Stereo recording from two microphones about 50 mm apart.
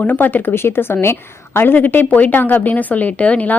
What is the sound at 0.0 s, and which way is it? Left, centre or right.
Speech, left.